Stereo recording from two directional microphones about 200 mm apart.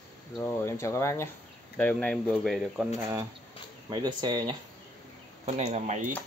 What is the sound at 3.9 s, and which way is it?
Speech, 20° right (ahead or behind).